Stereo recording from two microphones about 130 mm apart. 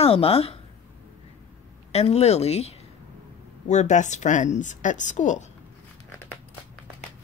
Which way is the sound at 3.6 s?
65° left (ahead or behind).